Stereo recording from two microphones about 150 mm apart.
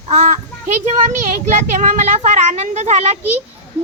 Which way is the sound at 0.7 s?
50° right (ahead or behind).